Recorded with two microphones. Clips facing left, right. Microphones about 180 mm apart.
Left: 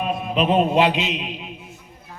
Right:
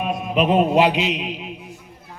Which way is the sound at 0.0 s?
5° right (ahead or behind).